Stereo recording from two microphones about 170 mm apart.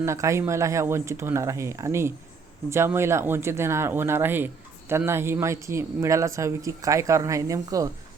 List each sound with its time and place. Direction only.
0.0 s speech: 15° right (ahead or behind)